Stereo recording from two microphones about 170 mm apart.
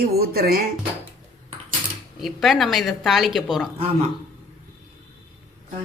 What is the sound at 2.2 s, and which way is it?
A woman's voice, centre (ahead or behind).